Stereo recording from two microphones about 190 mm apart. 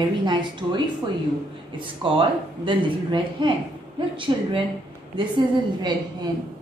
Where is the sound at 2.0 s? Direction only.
30° right (ahead or behind).